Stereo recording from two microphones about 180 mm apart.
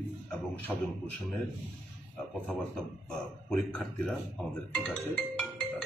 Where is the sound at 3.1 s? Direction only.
5° left (ahead or behind).